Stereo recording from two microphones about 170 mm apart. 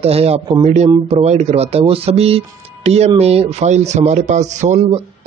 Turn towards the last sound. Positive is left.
turn(degrees=-45)  # may be behind; listen again after turning